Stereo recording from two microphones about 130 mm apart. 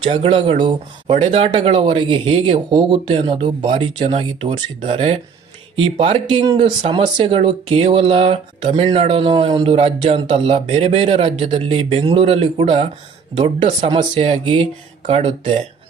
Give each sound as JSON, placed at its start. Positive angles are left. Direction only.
{"t": 0.0, "sound": "speech", "side_deg": -45}